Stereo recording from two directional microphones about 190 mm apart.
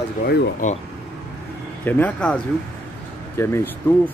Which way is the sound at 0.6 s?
40° left (ahead or behind).